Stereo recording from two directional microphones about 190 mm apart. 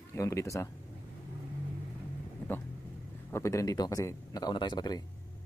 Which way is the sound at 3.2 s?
15° left (ahead or behind).